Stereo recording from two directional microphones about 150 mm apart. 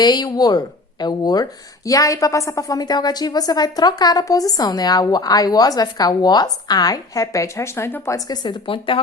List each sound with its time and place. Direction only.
0.0 s speech: 30° left (ahead or behind)